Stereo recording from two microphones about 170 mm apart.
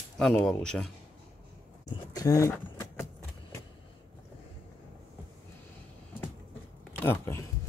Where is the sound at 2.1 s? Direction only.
20° left (ahead or behind).